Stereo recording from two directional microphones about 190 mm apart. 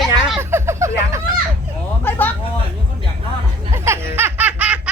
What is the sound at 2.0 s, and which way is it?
Speech, 10° left (ahead or behind).